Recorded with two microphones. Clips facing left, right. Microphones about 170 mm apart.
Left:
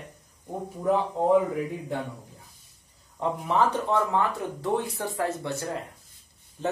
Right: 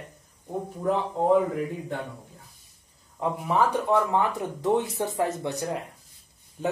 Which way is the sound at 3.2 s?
5° right (ahead or behind).